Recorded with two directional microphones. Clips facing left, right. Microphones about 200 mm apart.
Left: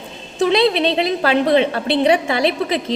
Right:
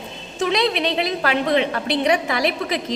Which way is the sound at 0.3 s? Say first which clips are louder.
Left 5 dB; 30° left (ahead or behind).